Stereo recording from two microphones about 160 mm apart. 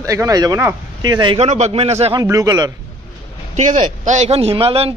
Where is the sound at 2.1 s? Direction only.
20° right (ahead or behind).